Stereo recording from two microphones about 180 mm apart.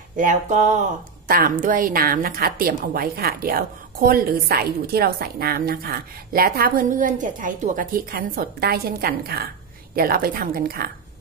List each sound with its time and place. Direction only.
0.1 s a woman's voice: 45° right (ahead or behind)